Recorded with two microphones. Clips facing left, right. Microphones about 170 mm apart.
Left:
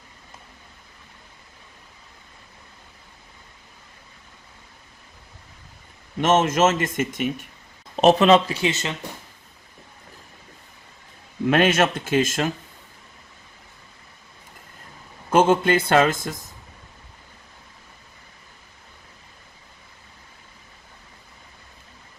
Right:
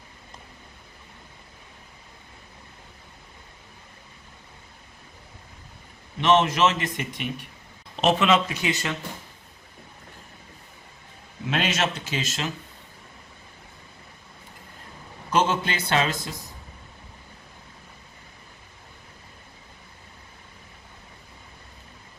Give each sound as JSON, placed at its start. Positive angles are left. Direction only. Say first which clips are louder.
{"t": 6.1, "sound": "speech", "louder": "left 2 dB", "side_deg": 45}
{"t": 11.4, "sound": "speech", "louder": "left 8 dB", "side_deg": 55}
{"t": 15.3, "sound": "speech", "louder": "left 7 dB", "side_deg": 50}